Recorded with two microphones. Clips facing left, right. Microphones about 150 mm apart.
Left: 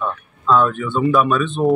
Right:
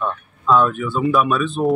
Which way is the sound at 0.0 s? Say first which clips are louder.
Even; centre (ahead or behind).